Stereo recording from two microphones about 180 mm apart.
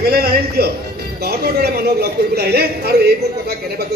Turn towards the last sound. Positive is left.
turn(degrees=-60)  # may be behind; listen again after turning